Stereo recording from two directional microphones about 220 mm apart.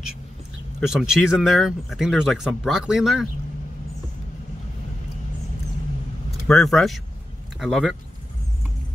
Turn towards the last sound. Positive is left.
turn(degrees=0)  # may be behind; listen again after turning